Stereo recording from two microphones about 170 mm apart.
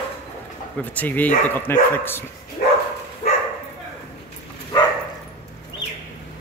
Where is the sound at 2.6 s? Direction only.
50° left (ahead or behind).